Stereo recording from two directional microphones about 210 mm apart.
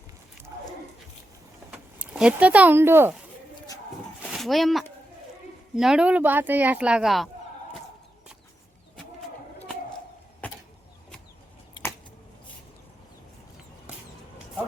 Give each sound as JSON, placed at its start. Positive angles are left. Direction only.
{"t": 1.7, "sound": "speech", "side_deg": -5}
{"t": 4.3, "sound": "speech", "side_deg": 0}
{"t": 10.4, "sound": "vehicle", "side_deg": 5}
{"t": 11.8, "sound": "a sound", "side_deg": 20}